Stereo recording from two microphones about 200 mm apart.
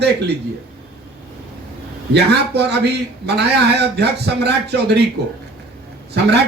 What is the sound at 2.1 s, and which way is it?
A man's voice, 55° right (ahead or behind).